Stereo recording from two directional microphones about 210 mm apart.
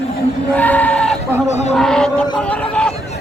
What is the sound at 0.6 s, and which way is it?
Goat, 5° left (ahead or behind).